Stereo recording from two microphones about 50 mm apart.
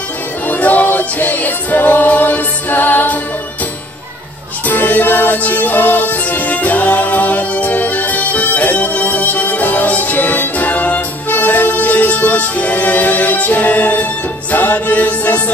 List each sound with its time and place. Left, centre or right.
0.5 s music: left
4.6 s music: left